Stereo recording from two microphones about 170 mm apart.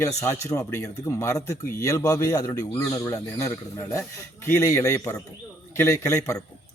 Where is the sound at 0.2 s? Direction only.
15° left (ahead or behind).